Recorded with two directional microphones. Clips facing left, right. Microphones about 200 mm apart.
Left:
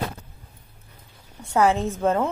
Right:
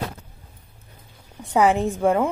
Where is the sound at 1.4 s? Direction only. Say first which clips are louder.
Right 2 dB; 15° right (ahead or behind).